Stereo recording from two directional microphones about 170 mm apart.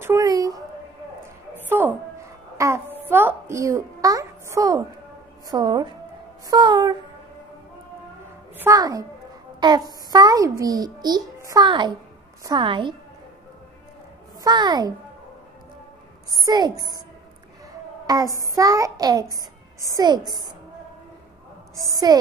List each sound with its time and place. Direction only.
0.0 s a woman's voice: 20° right (ahead or behind)
1.7 s a sound: 10° right (ahead or behind)
2.5 s babbling: 15° right (ahead or behind)
5.5 s a child's voice: 25° right (ahead or behind)
6.5 s music: 25° right (ahead or behind)
8.5 s a child's voice: 20° right (ahead or behind)
14.4 s a child's voice: 25° right (ahead or behind)
16.3 s a child's voice: 20° right (ahead or behind)
18.0 s child singing: 20° right (ahead or behind)
18.4 s a child's voice: 20° right (ahead or behind)
21.7 s a child's voice: 20° right (ahead or behind)